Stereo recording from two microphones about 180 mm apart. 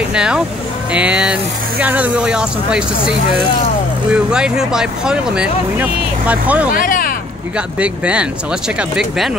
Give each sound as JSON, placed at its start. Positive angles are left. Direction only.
{"t": 0.1, "sound": "speech", "side_deg": -5}
{"t": 6.7, "sound": "speech", "side_deg": 50}
{"t": 7.5, "sound": "speech", "side_deg": -5}